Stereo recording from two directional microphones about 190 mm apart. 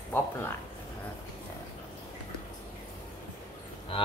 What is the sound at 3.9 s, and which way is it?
Speech, 25° left (ahead or behind).